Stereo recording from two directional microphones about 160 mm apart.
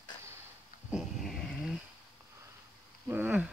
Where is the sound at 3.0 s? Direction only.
10° right (ahead or behind).